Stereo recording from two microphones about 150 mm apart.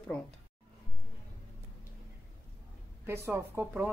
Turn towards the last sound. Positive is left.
turn(degrees=-15)  # may be behind; listen again after turning